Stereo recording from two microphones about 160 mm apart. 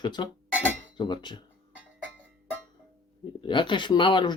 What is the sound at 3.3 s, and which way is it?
Speech, 30° left (ahead or behind).